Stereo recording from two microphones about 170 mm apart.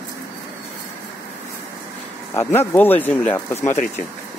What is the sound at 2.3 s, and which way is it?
Speech, 15° left (ahead or behind).